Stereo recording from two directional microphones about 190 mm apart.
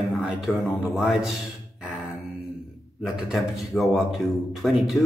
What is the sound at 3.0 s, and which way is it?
Speech, centre (ahead or behind).